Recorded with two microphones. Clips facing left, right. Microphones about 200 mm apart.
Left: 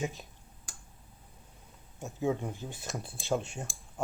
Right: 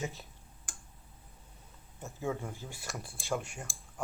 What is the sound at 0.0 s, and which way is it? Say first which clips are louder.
Speech: left 3 dB; 15° left (ahead or behind).